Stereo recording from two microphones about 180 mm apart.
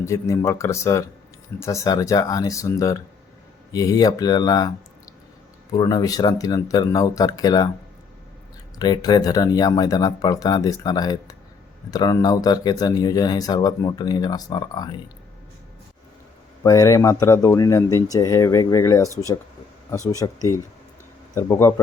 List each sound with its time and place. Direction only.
0.0 s speech: 15° left (ahead or behind)
5.7 s speech: 20° left (ahead or behind)
8.8 s speech: 25° left (ahead or behind)
16.6 s speech: 20° left (ahead or behind)
19.0 s speech: 20° right (ahead or behind)
20.1 s speech: 20° left (ahead or behind)